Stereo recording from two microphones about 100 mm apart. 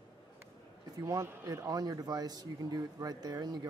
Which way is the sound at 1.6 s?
40° right (ahead or behind).